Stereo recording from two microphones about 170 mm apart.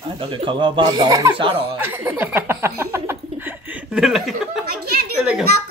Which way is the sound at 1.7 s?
10° right (ahead or behind).